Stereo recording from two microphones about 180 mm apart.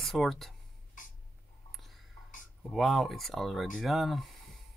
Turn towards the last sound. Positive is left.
turn(degrees=0)  # may be behind; listen again after turning